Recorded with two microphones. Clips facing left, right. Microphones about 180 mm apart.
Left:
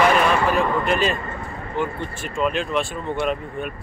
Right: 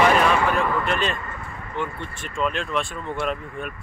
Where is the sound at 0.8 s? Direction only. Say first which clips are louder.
Left 4 dB; 5° left (ahead or behind).